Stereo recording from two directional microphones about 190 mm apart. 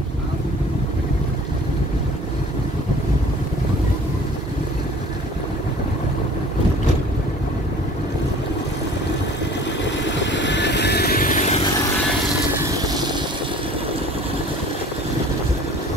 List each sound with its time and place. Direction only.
10.0 s vehicle: 70° left (ahead or behind); by 11.6 s 40° left (ahead or behind)
12.6 s vehicle: 20° right (ahead or behind)